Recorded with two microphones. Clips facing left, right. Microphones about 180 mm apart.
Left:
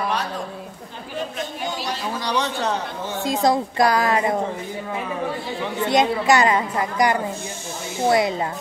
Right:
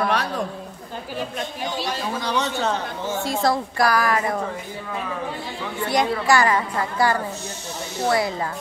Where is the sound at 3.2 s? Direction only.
20° left (ahead or behind).